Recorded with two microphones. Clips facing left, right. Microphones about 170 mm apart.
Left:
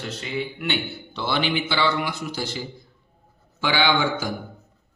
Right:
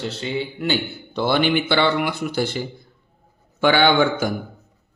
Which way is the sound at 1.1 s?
50° right (ahead or behind).